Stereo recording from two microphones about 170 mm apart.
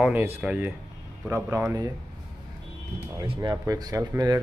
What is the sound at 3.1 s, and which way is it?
Speech, 30° right (ahead or behind).